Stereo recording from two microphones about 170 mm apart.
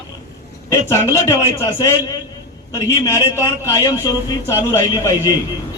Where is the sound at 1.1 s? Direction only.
15° left (ahead or behind).